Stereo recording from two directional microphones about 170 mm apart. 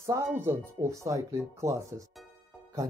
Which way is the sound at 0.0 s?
15° right (ahead or behind).